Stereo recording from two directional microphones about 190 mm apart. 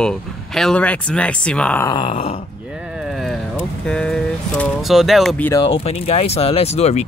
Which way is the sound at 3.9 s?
5° left (ahead or behind).